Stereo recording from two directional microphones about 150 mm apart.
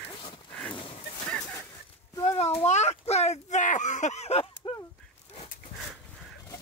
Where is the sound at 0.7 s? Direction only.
35° left (ahead or behind).